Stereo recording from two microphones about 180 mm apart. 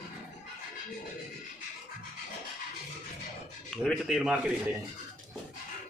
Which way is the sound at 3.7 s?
Centre (ahead or behind).